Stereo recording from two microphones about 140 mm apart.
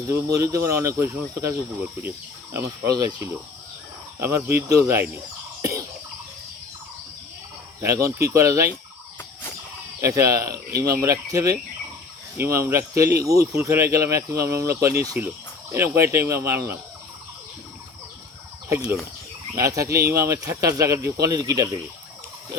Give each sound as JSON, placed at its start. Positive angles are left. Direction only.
{"t": 0.1, "sound": "speech", "side_deg": -20}
{"t": 4.2, "sound": "speech", "side_deg": -20}
{"t": 7.8, "sound": "speech", "side_deg": -20}
{"t": 10.2, "sound": "speech", "side_deg": -20}
{"t": 18.7, "sound": "speech", "side_deg": -20}